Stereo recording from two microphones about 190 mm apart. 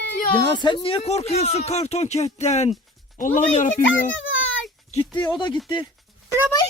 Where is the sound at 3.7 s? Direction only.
85° left.